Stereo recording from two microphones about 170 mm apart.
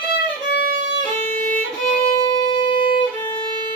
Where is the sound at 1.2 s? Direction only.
45° right (ahead or behind).